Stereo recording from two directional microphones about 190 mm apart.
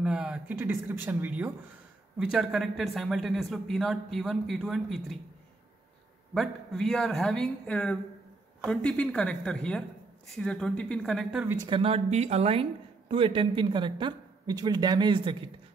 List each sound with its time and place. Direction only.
0.0 s a man's voice: 5° right (ahead or behind)
6.3 s a man's voice: centre (ahead or behind)
11.4 s speech: 20° right (ahead or behind)